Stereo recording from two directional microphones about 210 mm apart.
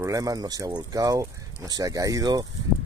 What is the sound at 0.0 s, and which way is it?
Speech, 15° right (ahead or behind).